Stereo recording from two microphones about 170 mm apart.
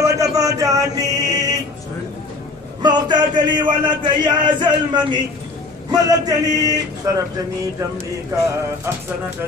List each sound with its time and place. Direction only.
0.0 s chant: 20° right (ahead or behind)
2.8 s a man's voice: 25° right (ahead or behind)